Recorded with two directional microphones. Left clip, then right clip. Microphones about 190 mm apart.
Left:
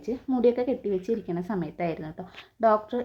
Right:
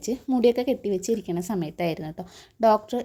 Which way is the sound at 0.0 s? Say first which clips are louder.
Right 2 dB; 35° right (ahead or behind).